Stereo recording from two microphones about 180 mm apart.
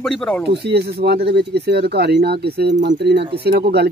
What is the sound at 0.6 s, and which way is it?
Speech, 65° right (ahead or behind).